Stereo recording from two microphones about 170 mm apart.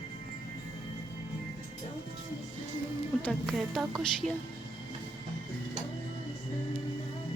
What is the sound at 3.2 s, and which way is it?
Speech, 5° left (ahead or behind).